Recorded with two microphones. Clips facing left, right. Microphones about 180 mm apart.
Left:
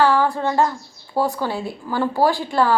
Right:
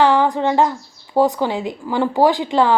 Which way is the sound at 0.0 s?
20° right (ahead or behind).